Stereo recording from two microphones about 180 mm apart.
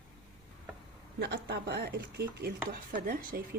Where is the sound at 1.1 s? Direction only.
65° right (ahead or behind); by 3.4 s 50° right (ahead or behind).